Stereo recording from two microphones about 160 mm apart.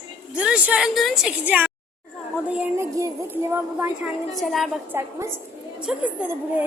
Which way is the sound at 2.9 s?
20° right (ahead or behind).